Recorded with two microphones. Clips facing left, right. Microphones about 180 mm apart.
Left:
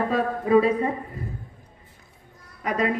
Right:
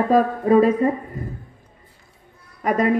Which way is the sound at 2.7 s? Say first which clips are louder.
Right 5 dB; 45° right (ahead or behind).